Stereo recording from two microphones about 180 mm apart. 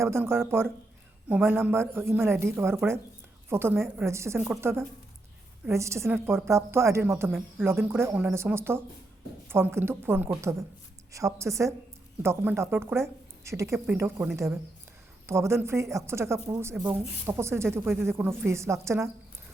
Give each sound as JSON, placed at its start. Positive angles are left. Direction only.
{"t": 0.0, "sound": "speech", "side_deg": -15}